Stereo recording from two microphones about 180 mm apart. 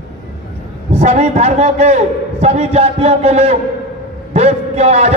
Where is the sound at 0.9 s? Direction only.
40° right (ahead or behind).